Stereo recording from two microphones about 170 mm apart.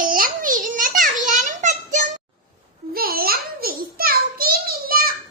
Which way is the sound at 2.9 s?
60° right (ahead or behind).